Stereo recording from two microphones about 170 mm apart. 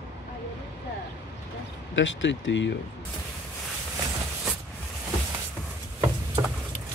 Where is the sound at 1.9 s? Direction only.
90° left.